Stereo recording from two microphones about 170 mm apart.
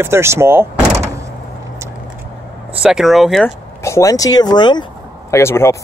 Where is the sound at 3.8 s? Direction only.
20° left (ahead or behind).